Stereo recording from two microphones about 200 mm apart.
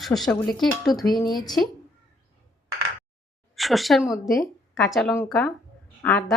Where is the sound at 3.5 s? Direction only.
Centre (ahead or behind).